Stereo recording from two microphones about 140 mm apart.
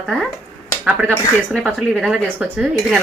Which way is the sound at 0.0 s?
Centre (ahead or behind).